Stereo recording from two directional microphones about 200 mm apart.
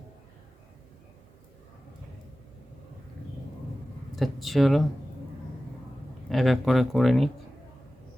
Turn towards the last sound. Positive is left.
turn(degrees=0)  # may be behind; listen again after turning